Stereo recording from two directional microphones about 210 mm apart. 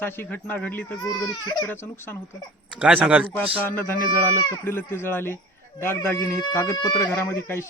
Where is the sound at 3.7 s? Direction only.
10° left (ahead or behind).